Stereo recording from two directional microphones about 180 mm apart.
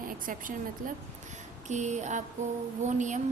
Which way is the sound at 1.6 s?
40° right (ahead or behind).